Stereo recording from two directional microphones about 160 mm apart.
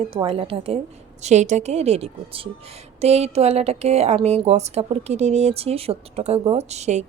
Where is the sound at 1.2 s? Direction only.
45° right (ahead or behind).